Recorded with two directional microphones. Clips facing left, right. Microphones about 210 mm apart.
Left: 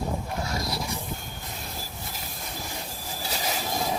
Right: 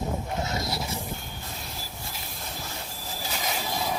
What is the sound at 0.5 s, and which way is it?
Vehicle, 25° right (ahead or behind).